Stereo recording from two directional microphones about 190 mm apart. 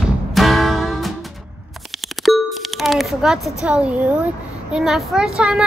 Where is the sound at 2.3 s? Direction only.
Centre (ahead or behind).